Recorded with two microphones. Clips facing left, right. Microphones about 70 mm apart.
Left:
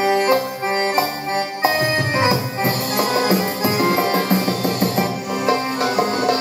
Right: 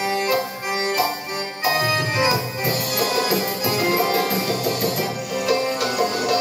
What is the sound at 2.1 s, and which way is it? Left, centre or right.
Music, left.